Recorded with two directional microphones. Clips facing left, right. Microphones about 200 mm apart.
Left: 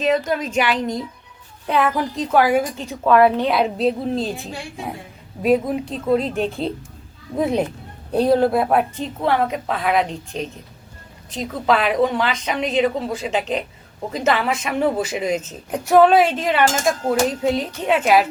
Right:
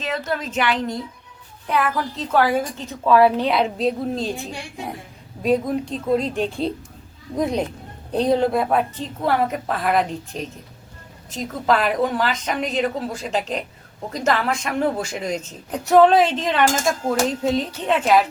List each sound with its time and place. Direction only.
0.0 s a woman's voice: 15° left (ahead or behind)
1.7 s a woman's voice: 20° left (ahead or behind)
3.1 s a woman's voice: centre (ahead or behind)